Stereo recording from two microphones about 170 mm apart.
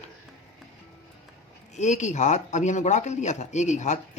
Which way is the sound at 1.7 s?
45° left (ahead or behind).